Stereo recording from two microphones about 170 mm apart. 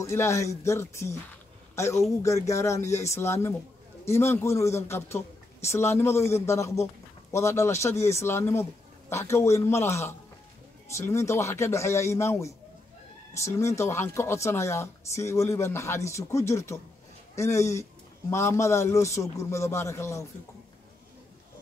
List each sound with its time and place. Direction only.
0.0 s a man's voice: 15° left (ahead or behind)